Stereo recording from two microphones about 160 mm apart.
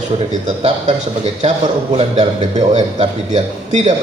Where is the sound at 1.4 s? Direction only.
45° right (ahead or behind).